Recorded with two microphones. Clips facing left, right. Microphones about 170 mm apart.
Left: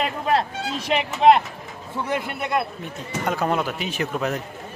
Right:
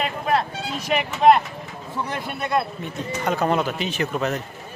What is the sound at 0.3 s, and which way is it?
Speech, 30° left (ahead or behind).